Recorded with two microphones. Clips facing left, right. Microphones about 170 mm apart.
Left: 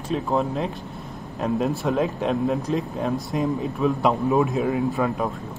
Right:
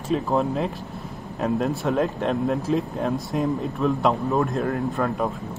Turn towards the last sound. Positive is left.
turn(degrees=0)  # may be behind; listen again after turning